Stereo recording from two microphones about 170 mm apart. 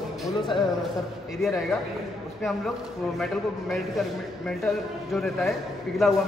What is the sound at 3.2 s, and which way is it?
A man's voice, centre (ahead or behind).